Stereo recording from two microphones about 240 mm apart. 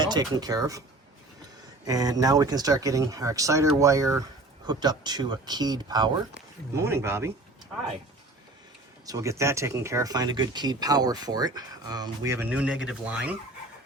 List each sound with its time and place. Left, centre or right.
0.0 s speech: centre
1.9 s speech: centre
9.0 s speech: centre